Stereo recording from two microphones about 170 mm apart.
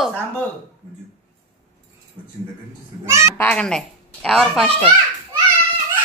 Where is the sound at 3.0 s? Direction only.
15° right (ahead or behind).